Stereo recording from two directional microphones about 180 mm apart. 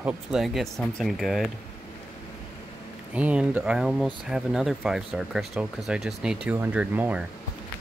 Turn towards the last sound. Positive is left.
turn(degrees=-10)  # may be behind; listen again after turning